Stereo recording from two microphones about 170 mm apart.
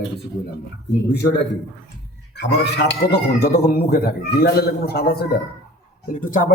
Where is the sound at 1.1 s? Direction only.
85° left.